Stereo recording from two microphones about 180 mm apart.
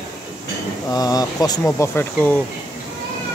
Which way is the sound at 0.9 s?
20° left (ahead or behind).